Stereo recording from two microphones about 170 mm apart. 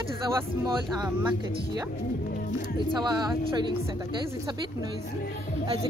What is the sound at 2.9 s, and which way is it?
Speech, 25° right (ahead or behind).